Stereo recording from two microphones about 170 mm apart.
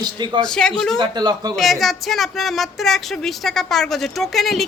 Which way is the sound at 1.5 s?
Centre (ahead or behind).